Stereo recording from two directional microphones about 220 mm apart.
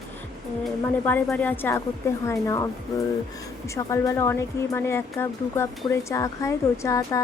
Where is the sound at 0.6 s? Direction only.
5° left (ahead or behind).